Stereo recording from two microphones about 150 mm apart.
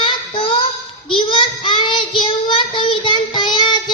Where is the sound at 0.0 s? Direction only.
40° left (ahead or behind).